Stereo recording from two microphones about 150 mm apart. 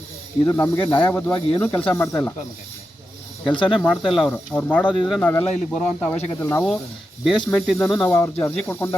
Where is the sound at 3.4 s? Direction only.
35° left (ahead or behind).